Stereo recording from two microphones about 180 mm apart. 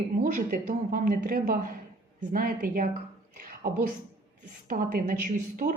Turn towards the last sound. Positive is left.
turn(degrees=-45)  # may be behind; listen again after turning